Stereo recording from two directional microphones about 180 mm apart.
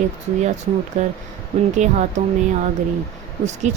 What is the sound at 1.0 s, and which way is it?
Speech, 40° right (ahead or behind).